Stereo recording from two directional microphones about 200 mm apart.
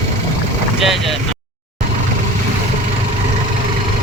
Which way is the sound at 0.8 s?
Centre (ahead or behind).